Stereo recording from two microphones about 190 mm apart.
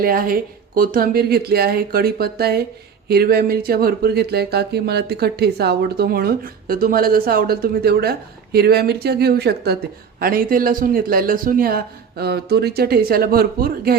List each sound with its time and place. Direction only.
0.0 s speech: 50° right (ahead or behind)